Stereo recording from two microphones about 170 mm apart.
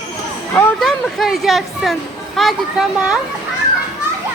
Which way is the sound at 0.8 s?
Centre (ahead or behind).